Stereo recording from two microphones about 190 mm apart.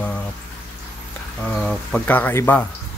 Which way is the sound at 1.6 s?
5° left (ahead or behind).